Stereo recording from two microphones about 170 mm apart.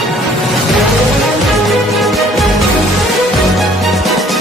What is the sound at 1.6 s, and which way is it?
Music, centre (ahead or behind).